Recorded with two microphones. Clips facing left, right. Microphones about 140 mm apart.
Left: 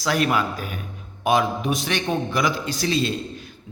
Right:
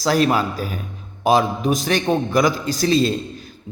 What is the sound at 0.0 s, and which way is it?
A man's voice, 35° right (ahead or behind).